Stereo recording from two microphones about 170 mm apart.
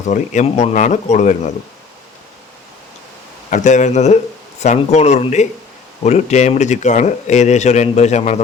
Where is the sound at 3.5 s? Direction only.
45° left (ahead or behind).